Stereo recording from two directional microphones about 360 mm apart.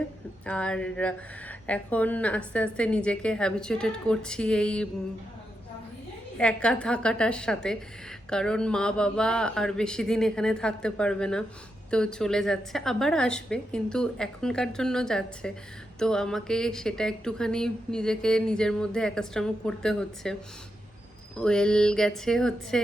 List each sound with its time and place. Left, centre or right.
0.4 s speech: centre
6.3 s speech: centre
21.3 s speech: centre